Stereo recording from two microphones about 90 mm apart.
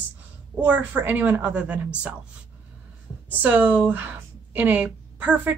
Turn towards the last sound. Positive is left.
turn(degrees=-15)  # may be behind; listen again after turning